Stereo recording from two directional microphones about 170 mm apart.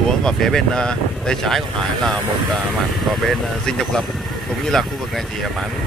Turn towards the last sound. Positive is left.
turn(degrees=0)  # may be behind; listen again after turning